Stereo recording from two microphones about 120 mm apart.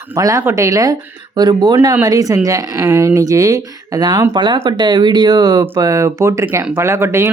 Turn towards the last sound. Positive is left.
turn(degrees=-20)  # may be behind; listen again after turning